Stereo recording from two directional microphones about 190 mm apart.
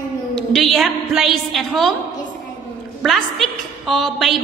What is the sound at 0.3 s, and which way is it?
A woman's voice, 5° left (ahead or behind).